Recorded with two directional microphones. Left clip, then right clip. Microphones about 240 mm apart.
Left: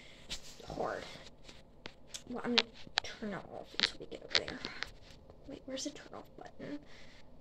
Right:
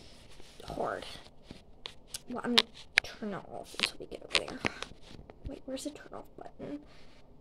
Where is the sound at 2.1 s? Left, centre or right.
Right.